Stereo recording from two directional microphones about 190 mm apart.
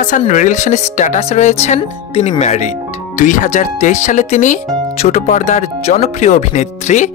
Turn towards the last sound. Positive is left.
turn(degrees=40)  # may be behind; listen again after turning